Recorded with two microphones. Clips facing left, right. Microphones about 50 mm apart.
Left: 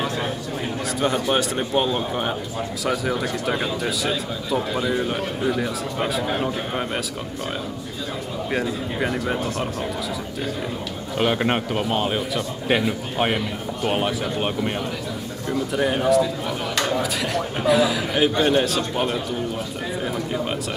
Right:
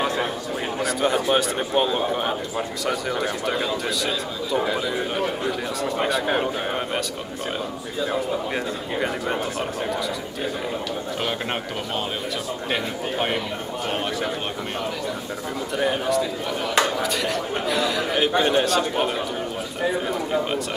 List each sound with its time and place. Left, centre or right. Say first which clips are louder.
1.0 s a man's voice: even; centre
8.5 s a man's voice: left 1 dB; centre
11.1 s a man's voice: left 9 dB; centre
15.5 s a man's voice: left 2 dB; centre